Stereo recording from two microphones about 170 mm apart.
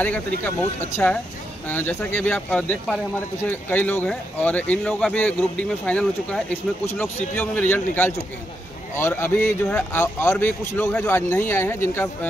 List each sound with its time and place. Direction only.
0.4 s speech: 15° left (ahead or behind)